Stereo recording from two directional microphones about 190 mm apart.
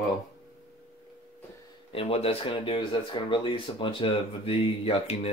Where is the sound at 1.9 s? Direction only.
30° left (ahead or behind).